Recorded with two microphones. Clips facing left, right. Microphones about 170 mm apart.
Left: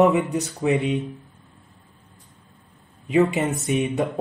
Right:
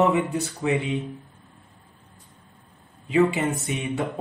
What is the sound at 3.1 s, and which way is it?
Speech, 20° left (ahead or behind).